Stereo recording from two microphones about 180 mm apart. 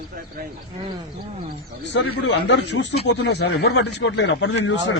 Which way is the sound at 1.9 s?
80° left.